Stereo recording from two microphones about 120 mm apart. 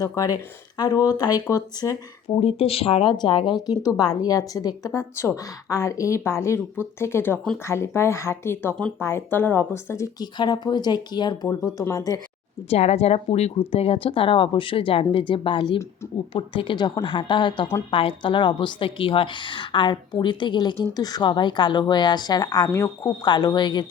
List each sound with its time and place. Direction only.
0.8 s speech: 35° left (ahead or behind)
2.4 s speech: 55° left (ahead or behind); by 10.1 s 20° left (ahead or behind)
10.2 s speech: 35° left (ahead or behind)
12.7 s a woman's voice: 65° left (ahead or behind); by 23.8 s 40° left (ahead or behind)